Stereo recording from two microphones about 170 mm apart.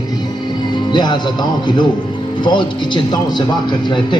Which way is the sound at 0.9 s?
25° left (ahead or behind).